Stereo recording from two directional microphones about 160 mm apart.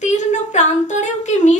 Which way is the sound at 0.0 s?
50° left (ahead or behind).